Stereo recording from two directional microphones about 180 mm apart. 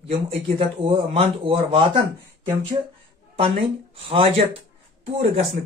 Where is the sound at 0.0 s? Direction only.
30° right (ahead or behind).